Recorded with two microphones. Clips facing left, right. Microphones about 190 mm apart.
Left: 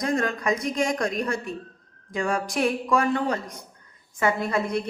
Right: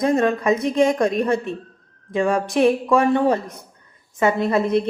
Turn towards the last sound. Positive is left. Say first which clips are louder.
# right 7 dB
turn(degrees=-25)  # may be behind; listen again after turning